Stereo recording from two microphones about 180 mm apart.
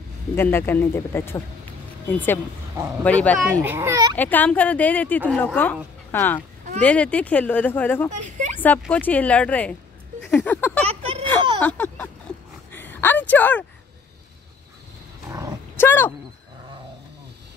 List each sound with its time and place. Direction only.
0.4 s speech: 10° left (ahead or behind)
3.6 s a child's voice: 15° right (ahead or behind)
4.1 s speech: 10° left (ahead or behind)
8.1 s speech: 40° right (ahead or behind)
8.5 s speech: 10° left (ahead or behind)
10.2 s a sound: 10° left (ahead or behind)
10.9 s a sound: 35° right (ahead or behind)
11.6 s a sound: 10° left (ahead or behind)
15.2 s dog: 15° right (ahead or behind)
15.8 s speech: 10° left (ahead or behind)